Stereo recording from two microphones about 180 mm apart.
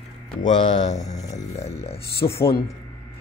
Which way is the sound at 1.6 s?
35° left (ahead or behind).